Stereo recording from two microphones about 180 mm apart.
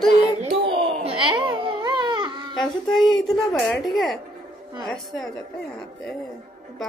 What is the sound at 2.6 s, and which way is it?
Speech, centre (ahead or behind).